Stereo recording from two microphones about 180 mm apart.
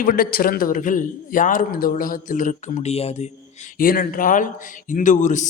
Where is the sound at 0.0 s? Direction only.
55° left (ahead or behind).